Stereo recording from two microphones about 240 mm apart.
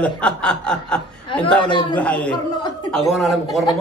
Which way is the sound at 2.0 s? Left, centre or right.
Centre.